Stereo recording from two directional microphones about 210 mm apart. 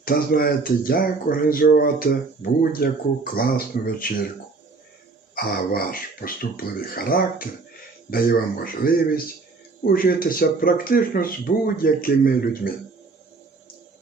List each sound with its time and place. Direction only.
0.0 s speech: 45° left (ahead or behind)
5.3 s speech: 45° left (ahead or behind)